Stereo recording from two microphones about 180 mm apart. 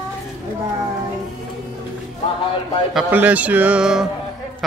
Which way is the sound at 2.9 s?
5° right (ahead or behind).